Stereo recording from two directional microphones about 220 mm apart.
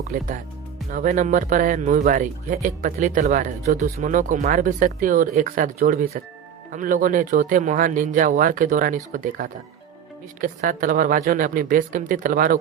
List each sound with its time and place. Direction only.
0.1 s speech: 40° right (ahead or behind)